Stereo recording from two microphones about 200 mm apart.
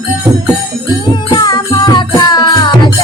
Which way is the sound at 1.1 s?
20° left (ahead or behind).